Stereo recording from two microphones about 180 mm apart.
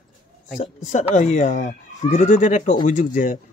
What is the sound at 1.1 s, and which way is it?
Speech, 45° left (ahead or behind).